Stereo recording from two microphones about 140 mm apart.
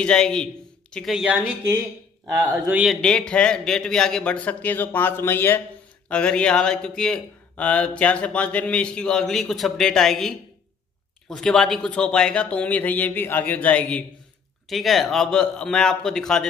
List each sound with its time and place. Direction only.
0.0 s a man's voice: 5° left (ahead or behind); by 2.8 s 20° right (ahead or behind)
2.8 s a man's voice: centre (ahead or behind)